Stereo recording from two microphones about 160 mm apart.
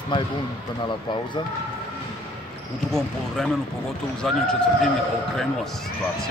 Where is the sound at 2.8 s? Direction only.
5° left (ahead or behind).